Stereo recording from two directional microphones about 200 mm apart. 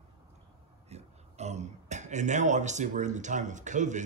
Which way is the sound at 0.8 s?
35° right (ahead or behind).